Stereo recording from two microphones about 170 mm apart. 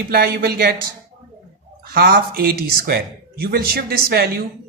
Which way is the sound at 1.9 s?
65° right (ahead or behind).